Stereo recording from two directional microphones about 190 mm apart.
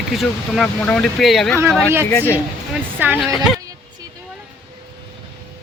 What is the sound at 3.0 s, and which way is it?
Speech, 10° right (ahead or behind).